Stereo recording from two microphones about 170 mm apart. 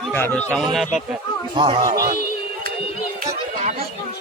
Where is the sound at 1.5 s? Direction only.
30° right (ahead or behind).